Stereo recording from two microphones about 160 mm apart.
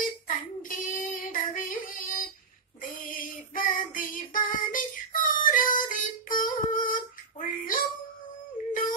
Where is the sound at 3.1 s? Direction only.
60° left (ahead or behind).